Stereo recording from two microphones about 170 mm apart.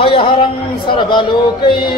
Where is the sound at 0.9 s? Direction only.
30° left (ahead or behind).